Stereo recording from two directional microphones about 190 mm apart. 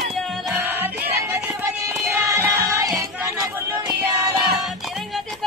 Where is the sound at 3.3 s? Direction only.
15° right (ahead or behind).